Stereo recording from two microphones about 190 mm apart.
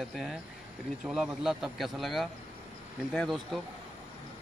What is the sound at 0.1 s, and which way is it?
Speech, centre (ahead or behind).